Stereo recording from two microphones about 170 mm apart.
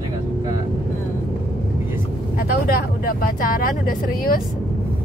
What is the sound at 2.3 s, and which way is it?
Speech, 60° left (ahead or behind).